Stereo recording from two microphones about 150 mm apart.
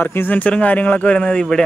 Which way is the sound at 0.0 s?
15° left (ahead or behind).